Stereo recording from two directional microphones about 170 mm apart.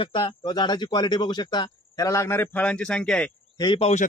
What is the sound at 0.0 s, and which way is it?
A man's voice, 30° left (ahead or behind).